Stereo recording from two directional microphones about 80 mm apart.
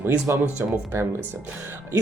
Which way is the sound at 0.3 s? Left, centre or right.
Right.